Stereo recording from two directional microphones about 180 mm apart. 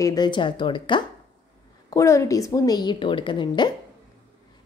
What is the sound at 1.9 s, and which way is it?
A woman's voice, 15° left (ahead or behind).